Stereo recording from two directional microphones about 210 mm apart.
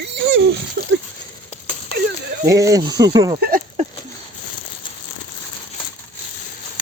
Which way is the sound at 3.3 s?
45° right (ahead or behind).